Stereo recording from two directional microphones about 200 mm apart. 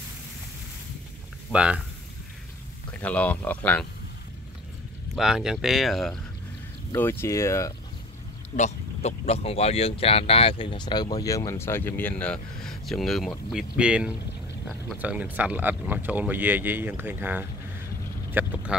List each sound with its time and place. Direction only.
1.5 s speech: 5° right (ahead or behind)
2.9 s speech: 5° left (ahead or behind)
5.1 s speech: 5° right (ahead or behind)
6.9 s speech: 10° left (ahead or behind)
8.5 s speech: 35° left (ahead or behind); by 18.8 s 5° right (ahead or behind)